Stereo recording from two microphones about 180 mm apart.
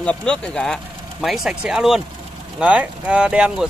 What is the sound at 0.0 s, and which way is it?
Speech, 5° left (ahead or behind).